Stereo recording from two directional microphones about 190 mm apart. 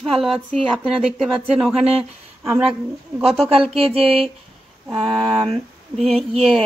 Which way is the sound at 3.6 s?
30° right (ahead or behind).